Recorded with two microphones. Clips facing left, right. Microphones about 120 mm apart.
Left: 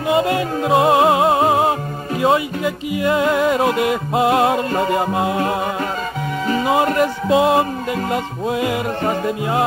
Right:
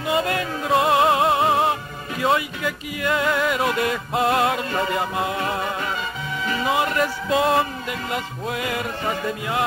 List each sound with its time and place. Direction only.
0.1 s music: 25° left (ahead or behind)
6.6 s music: 30° left (ahead or behind)